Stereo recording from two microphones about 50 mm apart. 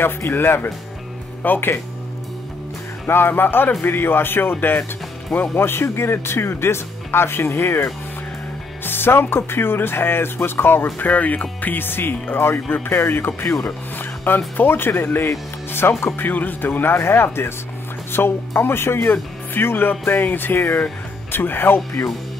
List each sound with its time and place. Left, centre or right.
0.3 s speech: left
1.4 s speech: left
3.1 s speech: left
5.6 s speech: left
11.0 s speech: left
13.7 s music: left
14.6 s speech: left
16.2 s speech: left
16.9 s speech: left